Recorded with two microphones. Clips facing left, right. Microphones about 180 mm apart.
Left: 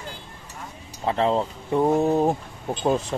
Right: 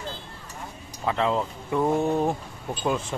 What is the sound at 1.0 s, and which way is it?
Speech, 30° left (ahead or behind).